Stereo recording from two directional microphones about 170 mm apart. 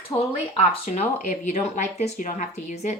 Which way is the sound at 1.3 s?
45° left (ahead or behind).